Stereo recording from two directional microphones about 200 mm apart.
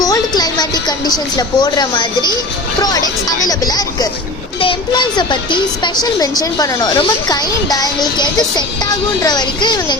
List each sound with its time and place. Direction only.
0.0 s a woman's voice: 20° left (ahead or behind)